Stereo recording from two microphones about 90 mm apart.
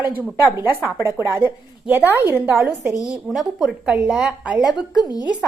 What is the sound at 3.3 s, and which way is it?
A woman's voice, 10° right (ahead or behind).